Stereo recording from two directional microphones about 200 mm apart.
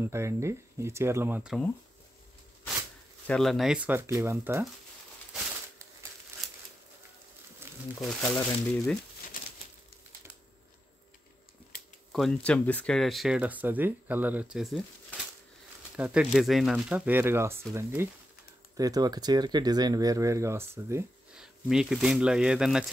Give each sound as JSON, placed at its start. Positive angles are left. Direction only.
{"t": 0.0, "sound": "speech", "side_deg": -15}
{"t": 3.3, "sound": "speech", "side_deg": 0}
{"t": 7.6, "sound": "crumpling", "side_deg": -10}
{"t": 8.0, "sound": "speech", "side_deg": 5}
{"t": 12.1, "sound": "speech", "side_deg": 0}
{"t": 21.4, "sound": "speech", "side_deg": 0}